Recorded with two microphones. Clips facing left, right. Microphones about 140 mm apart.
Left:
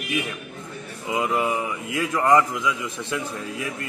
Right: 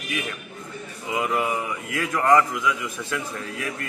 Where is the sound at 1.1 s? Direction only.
25° left (ahead or behind).